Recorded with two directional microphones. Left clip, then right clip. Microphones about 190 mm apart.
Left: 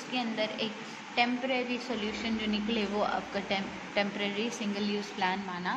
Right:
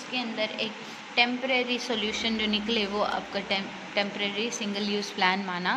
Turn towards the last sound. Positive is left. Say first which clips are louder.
# right 6 dB
turn(degrees=-20)  # may be behind; listen again after turning